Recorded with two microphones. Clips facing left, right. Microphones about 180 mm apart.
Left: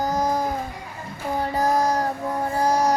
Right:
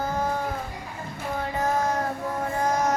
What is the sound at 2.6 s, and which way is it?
Music, 35° left (ahead or behind).